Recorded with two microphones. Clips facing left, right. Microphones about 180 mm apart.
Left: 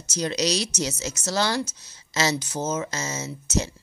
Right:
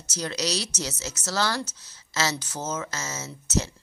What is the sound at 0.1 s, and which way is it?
Speech, 20° left (ahead or behind).